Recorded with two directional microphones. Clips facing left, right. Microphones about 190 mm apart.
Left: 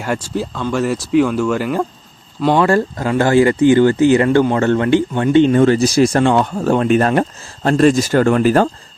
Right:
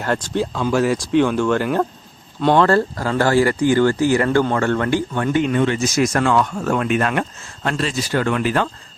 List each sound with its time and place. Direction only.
0.0 s speech: 10° left (ahead or behind); by 8.7 s 40° left (ahead or behind)